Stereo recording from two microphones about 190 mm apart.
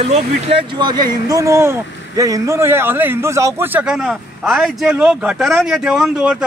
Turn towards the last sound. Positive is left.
turn(degrees=-5)  # may be behind; listen again after turning